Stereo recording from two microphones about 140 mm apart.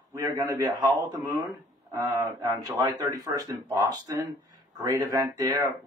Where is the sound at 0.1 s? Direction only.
25° right (ahead or behind).